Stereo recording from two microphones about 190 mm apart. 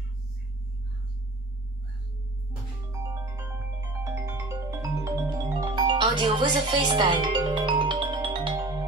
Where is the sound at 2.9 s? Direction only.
15° right (ahead or behind).